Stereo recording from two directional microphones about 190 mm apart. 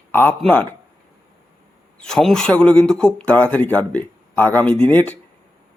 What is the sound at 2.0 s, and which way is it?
Speech, 5° left (ahead or behind).